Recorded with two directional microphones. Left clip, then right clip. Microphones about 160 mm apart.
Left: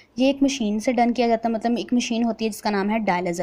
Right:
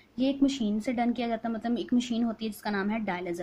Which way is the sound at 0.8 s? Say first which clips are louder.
Left 12 dB; 30° left (ahead or behind).